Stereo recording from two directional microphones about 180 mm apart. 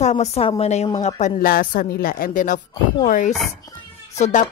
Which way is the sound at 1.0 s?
45° left (ahead or behind).